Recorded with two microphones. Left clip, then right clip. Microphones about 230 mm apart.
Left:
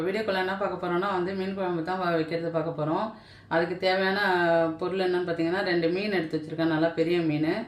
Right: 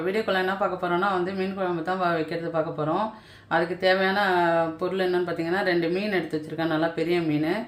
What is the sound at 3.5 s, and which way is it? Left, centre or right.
Speech, right.